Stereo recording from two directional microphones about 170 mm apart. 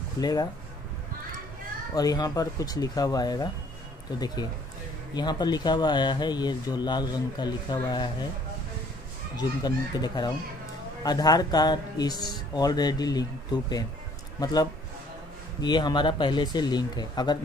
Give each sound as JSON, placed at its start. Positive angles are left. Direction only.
{"t": 0.2, "sound": "speech", "side_deg": 25}
{"t": 2.0, "sound": "speech", "side_deg": 20}
{"t": 5.1, "sound": "speech", "side_deg": 25}
{"t": 9.4, "sound": "speech", "side_deg": 25}